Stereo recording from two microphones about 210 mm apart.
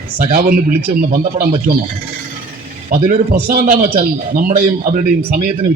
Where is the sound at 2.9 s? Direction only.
40° right (ahead or behind).